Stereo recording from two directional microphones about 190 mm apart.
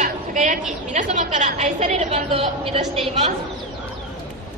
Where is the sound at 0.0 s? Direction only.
40° right (ahead or behind).